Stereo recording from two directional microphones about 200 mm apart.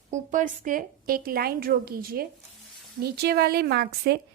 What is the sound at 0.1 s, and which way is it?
A woman's voice, 40° right (ahead or behind).